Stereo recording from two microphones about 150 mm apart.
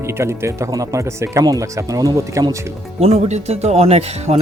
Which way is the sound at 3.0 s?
45° right (ahead or behind).